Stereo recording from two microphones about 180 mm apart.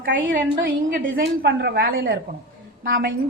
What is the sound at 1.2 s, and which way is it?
A woman's voice, 70° right (ahead or behind).